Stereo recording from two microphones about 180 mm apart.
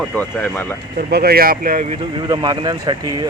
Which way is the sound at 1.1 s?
60° right (ahead or behind).